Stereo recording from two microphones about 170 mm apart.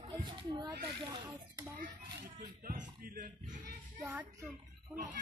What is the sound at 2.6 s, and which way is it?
Speech, 55° right (ahead or behind).